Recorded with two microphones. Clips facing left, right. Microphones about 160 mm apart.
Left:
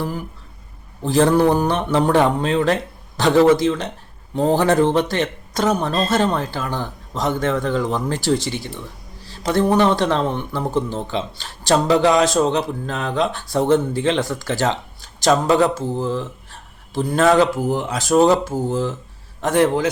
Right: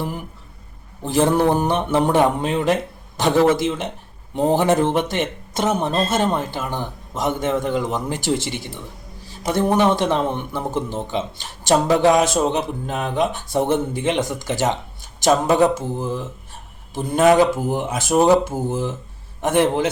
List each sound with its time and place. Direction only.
1.0 s speech: 20° right (ahead or behind)